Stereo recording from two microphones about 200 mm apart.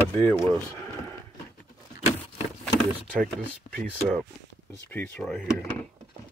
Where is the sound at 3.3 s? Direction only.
5° left (ahead or behind).